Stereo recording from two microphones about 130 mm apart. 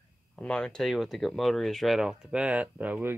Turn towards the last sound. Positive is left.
turn(degrees=-10)  # may be behind; listen again after turning